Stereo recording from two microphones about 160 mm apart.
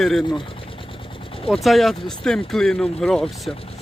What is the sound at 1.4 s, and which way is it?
Speech, centre (ahead or behind).